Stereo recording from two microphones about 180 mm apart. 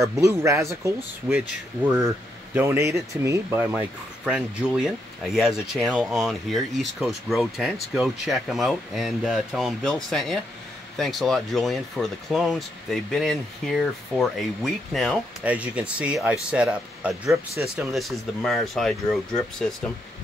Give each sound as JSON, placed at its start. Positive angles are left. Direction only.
{"t": 0.2, "sound": "speech", "side_deg": -15}